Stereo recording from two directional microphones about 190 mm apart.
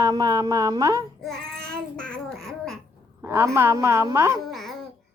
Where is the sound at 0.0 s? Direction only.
20° right (ahead or behind).